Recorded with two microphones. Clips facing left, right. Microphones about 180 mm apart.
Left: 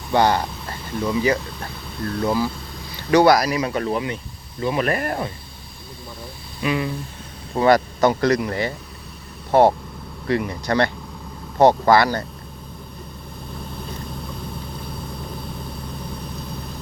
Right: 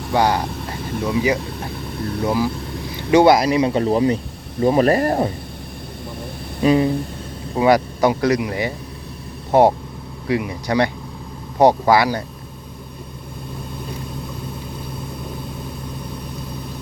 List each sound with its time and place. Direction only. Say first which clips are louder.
0.1 s speech: even; 10° right (ahead or behind)
3.1 s speech: right 2 dB; 25° right (ahead or behind)
6.6 s speech: right 8 dB; 35° right (ahead or behind)
7.5 s speech: right 1 dB; 10° right (ahead or behind)